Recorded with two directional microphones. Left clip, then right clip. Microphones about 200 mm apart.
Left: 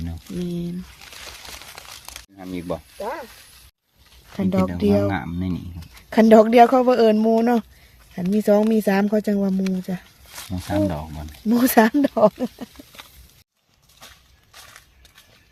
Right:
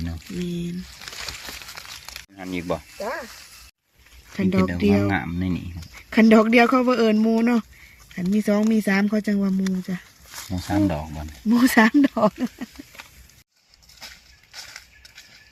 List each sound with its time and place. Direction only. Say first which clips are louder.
2.3 s speech: right 2 dB; 5° left (ahead or behind)
4.4 s speech: even; 45° left (ahead or behind)
5.0 s speech: even; 5° left (ahead or behind)
6.1 s speech: left 4 dB; 45° left (ahead or behind)
10.5 s speech: even; 5° left (ahead or behind)
11.4 s speech: left 1 dB; 45° left (ahead or behind)